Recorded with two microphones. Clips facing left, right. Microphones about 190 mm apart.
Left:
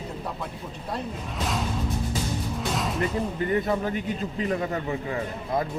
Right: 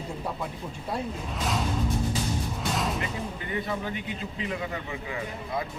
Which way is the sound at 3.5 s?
45° left (ahead or behind).